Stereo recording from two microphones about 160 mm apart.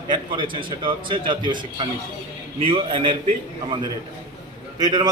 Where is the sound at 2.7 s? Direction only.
30° right (ahead or behind).